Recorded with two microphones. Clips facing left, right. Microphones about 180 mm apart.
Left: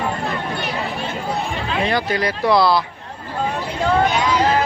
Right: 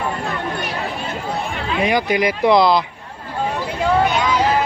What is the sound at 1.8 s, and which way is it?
Speech, 15° right (ahead or behind).